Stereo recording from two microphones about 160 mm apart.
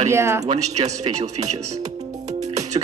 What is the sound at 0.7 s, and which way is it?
Speech, 45° right (ahead or behind).